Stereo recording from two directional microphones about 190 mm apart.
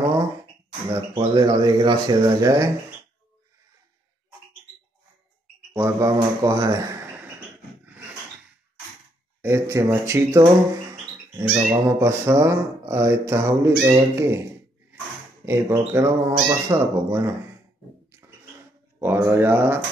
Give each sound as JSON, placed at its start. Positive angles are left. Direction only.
{"t": 0.9, "sound": "speech", "side_deg": -20}
{"t": 5.7, "sound": "a man's voice", "side_deg": -15}
{"t": 9.4, "sound": "speech", "side_deg": -15}
{"t": 11.4, "sound": "speech", "side_deg": 0}
{"t": 11.7, "sound": "speech", "side_deg": -15}
{"t": 18.9, "sound": "speech", "side_deg": -10}